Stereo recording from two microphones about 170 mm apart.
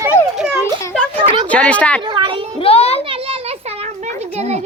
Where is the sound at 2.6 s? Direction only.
35° left (ahead or behind).